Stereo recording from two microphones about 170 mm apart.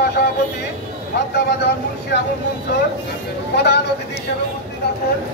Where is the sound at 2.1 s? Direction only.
80° left.